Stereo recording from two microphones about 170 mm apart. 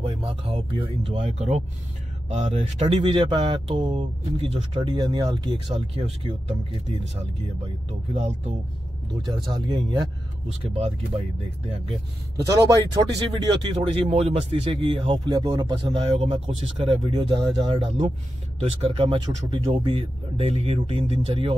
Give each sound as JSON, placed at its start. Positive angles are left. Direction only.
{"t": 0.0, "sound": "speech", "side_deg": -30}
{"t": 3.0, "sound": "speech", "side_deg": -30}
{"t": 8.1, "sound": "speech", "side_deg": -40}
{"t": 9.5, "sound": "speech", "side_deg": -25}
{"t": 12.4, "sound": "speech", "side_deg": -20}
{"t": 14.0, "sound": "speech", "side_deg": -40}
{"t": 15.8, "sound": "speech", "side_deg": -30}